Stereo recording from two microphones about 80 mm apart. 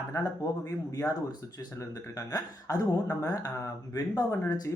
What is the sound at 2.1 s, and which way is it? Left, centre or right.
Speech, left.